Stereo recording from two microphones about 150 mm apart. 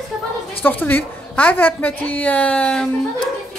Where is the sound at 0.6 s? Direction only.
15° left (ahead or behind).